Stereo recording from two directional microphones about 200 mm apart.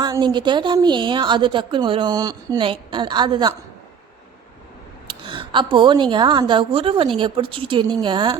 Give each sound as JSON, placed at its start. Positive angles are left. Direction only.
{"t": 0.0, "sound": "a woman's voice", "side_deg": -20}
{"t": 5.0, "sound": "a woman's voice", "side_deg": -25}